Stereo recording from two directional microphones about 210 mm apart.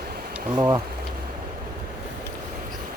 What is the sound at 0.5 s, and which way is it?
Speech, 20° right (ahead or behind).